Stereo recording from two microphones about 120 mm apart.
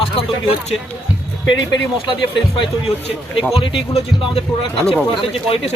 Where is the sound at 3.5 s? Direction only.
50° left (ahead or behind).